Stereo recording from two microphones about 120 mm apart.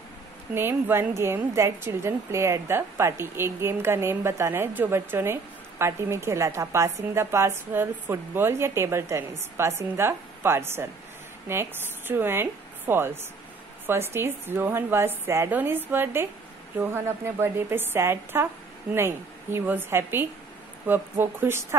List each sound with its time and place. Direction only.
0.6 s a woman's voice: 20° right (ahead or behind)